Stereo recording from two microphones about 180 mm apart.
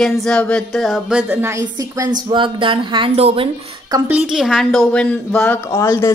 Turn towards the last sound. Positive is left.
turn(degrees=15)  # may be behind; listen again after turning